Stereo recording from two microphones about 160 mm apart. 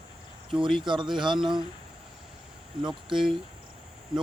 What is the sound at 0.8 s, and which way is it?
Speech, 30° right (ahead or behind).